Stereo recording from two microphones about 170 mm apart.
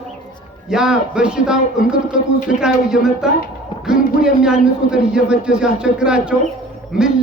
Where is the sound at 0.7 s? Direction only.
5° right (ahead or behind).